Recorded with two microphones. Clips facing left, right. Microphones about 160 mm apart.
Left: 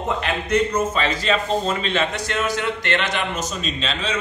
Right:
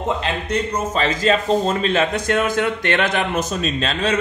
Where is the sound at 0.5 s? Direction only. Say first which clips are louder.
Left 4 dB; 40° right (ahead or behind).